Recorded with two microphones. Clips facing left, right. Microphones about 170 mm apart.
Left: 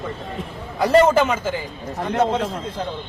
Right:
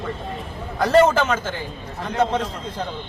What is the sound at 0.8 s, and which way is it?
Speech, 10° left (ahead or behind).